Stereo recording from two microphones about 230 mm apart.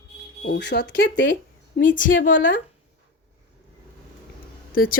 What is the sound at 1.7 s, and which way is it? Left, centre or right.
Speech, left.